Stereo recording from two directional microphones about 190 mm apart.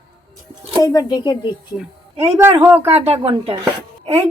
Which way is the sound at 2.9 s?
35° right (ahead or behind).